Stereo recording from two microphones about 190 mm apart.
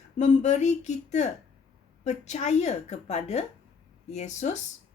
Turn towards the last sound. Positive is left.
turn(degrees=40)  # may be behind; listen again after turning